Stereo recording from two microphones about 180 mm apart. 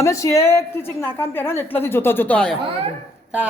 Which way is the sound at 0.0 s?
15° left (ahead or behind).